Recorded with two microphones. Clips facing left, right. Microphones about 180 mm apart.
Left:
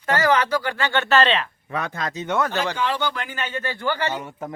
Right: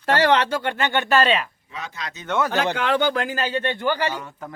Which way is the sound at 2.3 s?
10° left (ahead or behind).